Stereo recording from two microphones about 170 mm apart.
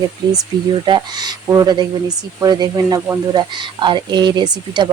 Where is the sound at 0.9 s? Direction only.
25° right (ahead or behind).